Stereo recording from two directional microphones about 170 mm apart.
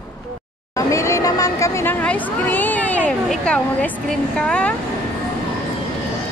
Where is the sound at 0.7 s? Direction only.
20° left (ahead or behind).